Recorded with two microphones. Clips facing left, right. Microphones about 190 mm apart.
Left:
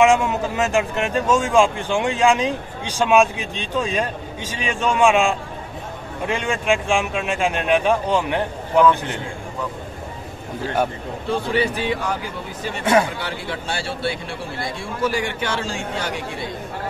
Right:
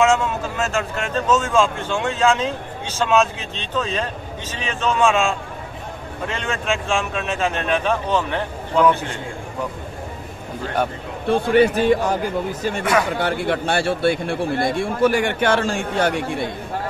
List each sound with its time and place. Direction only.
0.0 s speech: 15° left (ahead or behind)
11.2 s speech: 55° right (ahead or behind)
12.8 s speech: 25° left (ahead or behind)
13.1 s speech: 50° right (ahead or behind)